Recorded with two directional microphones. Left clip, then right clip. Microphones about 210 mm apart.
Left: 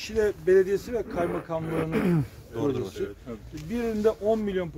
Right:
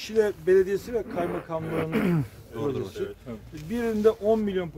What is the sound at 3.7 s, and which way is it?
Speech, 10° right (ahead or behind).